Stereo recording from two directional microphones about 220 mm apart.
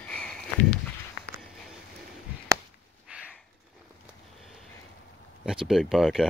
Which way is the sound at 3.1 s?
5° right (ahead or behind).